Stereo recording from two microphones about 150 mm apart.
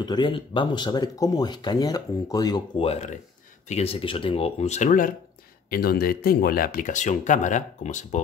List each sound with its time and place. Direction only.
0.0 s speech: 30° left (ahead or behind)
2.8 s speech: 45° left (ahead or behind)
4.8 s speech: 65° left (ahead or behind)
5.7 s speech: 90° left; by 8.2 s 50° left (ahead or behind)